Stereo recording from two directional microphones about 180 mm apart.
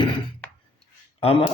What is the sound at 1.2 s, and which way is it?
Speech, 35° left (ahead or behind).